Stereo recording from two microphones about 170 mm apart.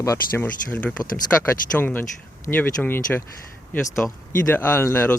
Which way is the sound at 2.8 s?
15° left (ahead or behind).